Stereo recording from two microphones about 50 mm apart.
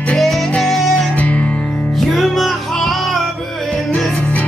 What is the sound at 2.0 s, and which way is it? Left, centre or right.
Music, centre.